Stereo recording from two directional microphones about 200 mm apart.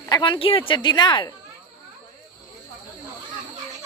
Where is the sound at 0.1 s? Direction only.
25° left (ahead or behind).